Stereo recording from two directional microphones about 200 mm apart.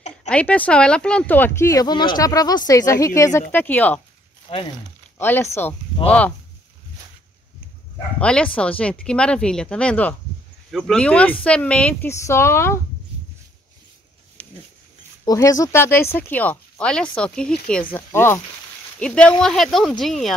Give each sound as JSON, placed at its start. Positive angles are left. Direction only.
{"t": 0.3, "sound": "speech", "side_deg": 5}
{"t": 4.5, "sound": "speech", "side_deg": 30}
{"t": 5.2, "sound": "speech", "side_deg": 10}
{"t": 8.2, "sound": "speech", "side_deg": 5}
{"t": 15.2, "sound": "speech", "side_deg": 15}